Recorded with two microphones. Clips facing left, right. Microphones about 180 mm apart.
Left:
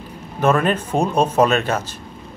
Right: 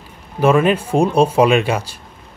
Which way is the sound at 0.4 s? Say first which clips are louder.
Right 4 dB; 10° right (ahead or behind).